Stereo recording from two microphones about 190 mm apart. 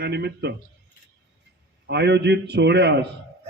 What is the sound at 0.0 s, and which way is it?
Speech, 60° right (ahead or behind).